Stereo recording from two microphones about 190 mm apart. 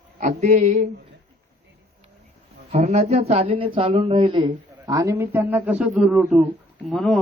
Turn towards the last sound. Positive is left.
turn(degrees=0)  # may be behind; listen again after turning